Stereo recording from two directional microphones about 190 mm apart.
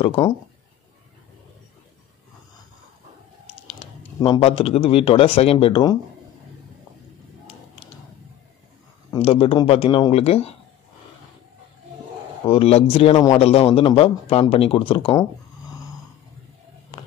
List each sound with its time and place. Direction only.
0.0 s speech: 30° left (ahead or behind)
3.4 s typing: 30° left (ahead or behind)
4.4 s speech: 30° left (ahead or behind)
9.1 s speech: 30° left (ahead or behind)
12.4 s speech: 30° left (ahead or behind)
16.9 s a sound: 30° left (ahead or behind)